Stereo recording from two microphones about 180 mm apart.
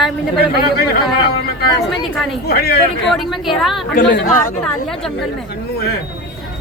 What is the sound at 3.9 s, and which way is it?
Speech, 70° left (ahead or behind).